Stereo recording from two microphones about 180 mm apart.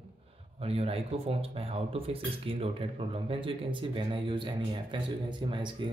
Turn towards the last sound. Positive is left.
turn(degrees=-25)  # may be behind; listen again after turning